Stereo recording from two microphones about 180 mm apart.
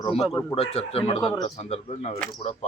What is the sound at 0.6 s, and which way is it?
Speech, 35° left (ahead or behind).